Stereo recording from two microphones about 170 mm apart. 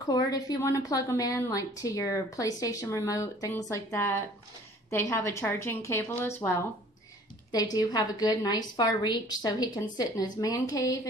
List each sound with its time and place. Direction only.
0.1 s a woman's voice: 20° left (ahead or behind)
7.5 s a woman's voice: 25° left (ahead or behind)